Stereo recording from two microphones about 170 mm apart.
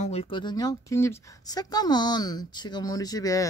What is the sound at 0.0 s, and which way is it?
Speech, 35° left (ahead or behind).